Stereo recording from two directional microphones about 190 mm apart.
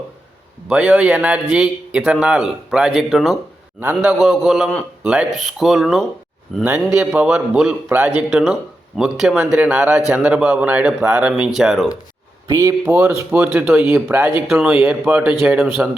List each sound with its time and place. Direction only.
0.7 s a man's voice: 5° right (ahead or behind)
12.5 s a man's voice: 15° right (ahead or behind)